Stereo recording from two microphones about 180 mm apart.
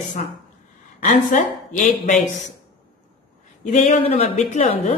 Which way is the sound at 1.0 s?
45° left (ahead or behind).